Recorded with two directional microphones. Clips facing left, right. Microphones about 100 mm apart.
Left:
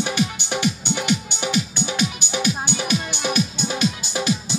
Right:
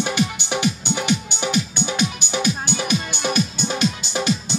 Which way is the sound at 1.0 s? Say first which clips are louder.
Right 1 dB; centre (ahead or behind).